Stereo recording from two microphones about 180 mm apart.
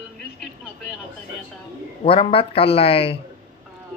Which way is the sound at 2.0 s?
30° left (ahead or behind).